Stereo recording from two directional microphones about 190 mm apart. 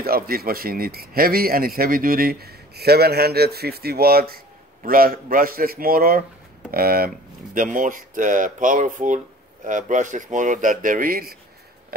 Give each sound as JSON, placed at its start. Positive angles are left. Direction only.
{"t": 0.0, "sound": "a man's voice", "side_deg": -55}